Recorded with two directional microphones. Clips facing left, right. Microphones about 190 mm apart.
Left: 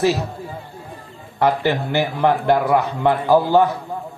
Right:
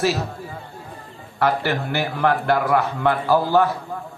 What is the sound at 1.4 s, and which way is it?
A man's voice, 20° left (ahead or behind).